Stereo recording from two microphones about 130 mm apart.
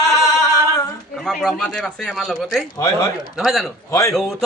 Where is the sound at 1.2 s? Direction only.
5° left (ahead or behind).